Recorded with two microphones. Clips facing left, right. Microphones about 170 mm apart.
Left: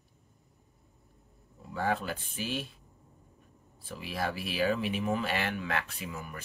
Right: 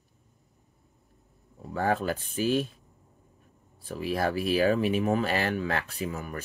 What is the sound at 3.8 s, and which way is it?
Speech, 45° right (ahead or behind).